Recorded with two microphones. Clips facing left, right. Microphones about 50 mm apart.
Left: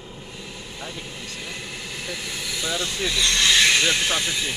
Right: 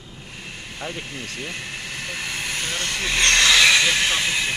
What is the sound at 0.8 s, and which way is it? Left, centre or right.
Speech, right.